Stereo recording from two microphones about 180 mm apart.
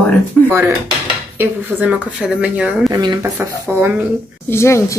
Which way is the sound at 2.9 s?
20° right (ahead or behind).